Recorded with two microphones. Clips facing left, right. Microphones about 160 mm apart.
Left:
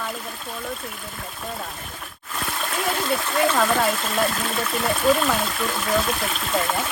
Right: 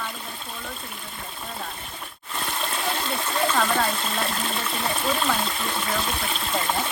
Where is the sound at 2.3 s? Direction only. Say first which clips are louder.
Left 2 dB; centre (ahead or behind).